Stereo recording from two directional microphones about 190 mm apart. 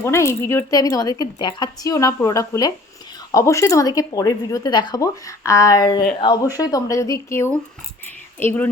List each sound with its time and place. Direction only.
0.0 s speech: 15° left (ahead or behind)